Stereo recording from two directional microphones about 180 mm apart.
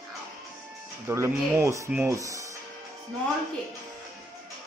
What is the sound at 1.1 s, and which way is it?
Speech, 15° right (ahead or behind).